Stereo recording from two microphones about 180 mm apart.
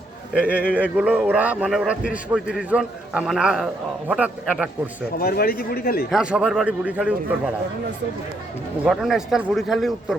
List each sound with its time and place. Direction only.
0.3 s a man's voice: 5° right (ahead or behind)
5.2 s a man's voice: 60° left (ahead or behind)
6.1 s a man's voice: 5° right (ahead or behind)
8.8 s a man's voice: centre (ahead or behind)